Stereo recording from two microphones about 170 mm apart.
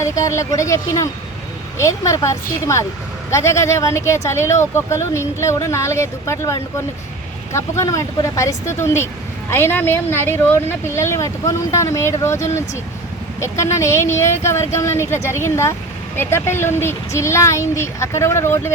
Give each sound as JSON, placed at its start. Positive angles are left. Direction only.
{"t": 0.0, "sound": "speech", "side_deg": 15}